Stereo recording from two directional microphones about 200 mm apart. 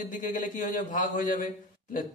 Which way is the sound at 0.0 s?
40° left (ahead or behind).